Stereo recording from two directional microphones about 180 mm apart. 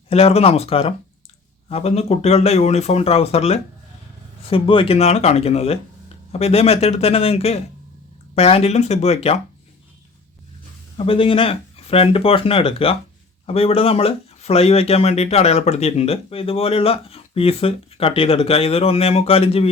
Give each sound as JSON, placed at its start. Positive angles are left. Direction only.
{"t": 0.1, "sound": "speech", "side_deg": 35}
{"t": 10.9, "sound": "speech", "side_deg": 30}